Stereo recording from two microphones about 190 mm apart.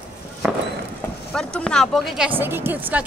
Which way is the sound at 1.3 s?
5° left (ahead or behind).